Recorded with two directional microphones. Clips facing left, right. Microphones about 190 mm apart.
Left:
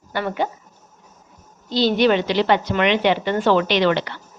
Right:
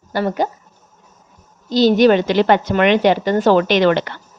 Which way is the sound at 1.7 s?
45° right (ahead or behind).